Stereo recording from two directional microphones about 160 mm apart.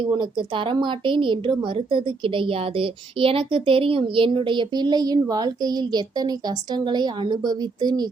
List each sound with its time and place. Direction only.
0.0 s speech: 30° right (ahead or behind)